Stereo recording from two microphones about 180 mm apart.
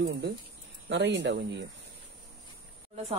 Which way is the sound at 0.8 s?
80° right.